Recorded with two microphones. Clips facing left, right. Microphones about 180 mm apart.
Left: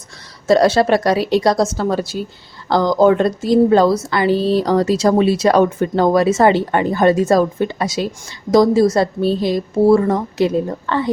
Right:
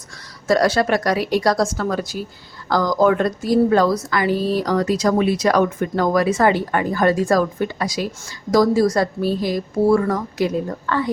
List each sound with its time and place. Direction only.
0.4 s a woman's voice: 25° left (ahead or behind)